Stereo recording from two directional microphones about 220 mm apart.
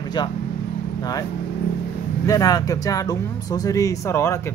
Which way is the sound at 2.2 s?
15° left (ahead or behind).